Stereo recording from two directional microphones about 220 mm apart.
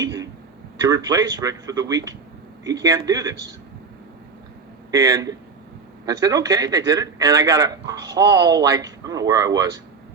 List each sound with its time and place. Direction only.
0.0 s a sound: 15° right (ahead or behind)
0.8 s a man's voice: 15° right (ahead or behind)
4.9 s a man's voice: 15° right (ahead or behind)